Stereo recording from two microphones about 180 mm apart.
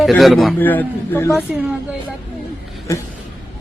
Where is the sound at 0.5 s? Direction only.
10° left (ahead or behind).